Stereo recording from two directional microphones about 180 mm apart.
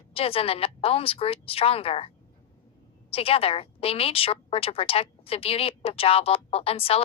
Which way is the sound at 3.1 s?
30° left (ahead or behind).